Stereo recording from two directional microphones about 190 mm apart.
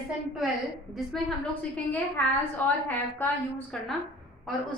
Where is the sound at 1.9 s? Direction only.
10° left (ahead or behind).